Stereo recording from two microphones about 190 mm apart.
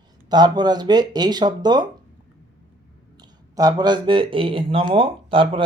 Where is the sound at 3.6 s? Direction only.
20° right (ahead or behind).